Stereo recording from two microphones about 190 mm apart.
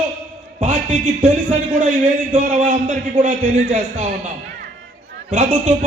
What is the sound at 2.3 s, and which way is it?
A man's voice, 40° right (ahead or behind).